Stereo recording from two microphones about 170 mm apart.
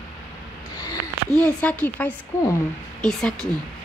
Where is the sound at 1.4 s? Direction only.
10° left (ahead or behind).